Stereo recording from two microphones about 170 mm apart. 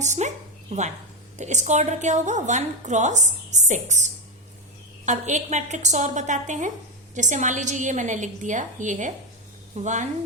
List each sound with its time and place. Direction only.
0.0 s a woman's voice: 45° right (ahead or behind)